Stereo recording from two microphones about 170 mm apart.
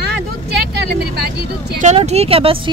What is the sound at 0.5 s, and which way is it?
Speech, 70° right (ahead or behind).